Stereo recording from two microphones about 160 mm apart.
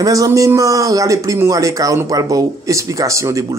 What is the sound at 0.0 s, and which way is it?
Speech, 20° right (ahead or behind).